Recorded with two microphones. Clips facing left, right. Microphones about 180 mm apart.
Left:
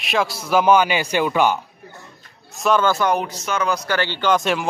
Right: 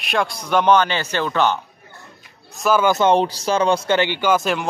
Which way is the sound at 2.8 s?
20° right (ahead or behind).